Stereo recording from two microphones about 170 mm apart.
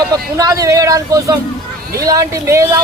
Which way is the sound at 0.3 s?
20° right (ahead or behind).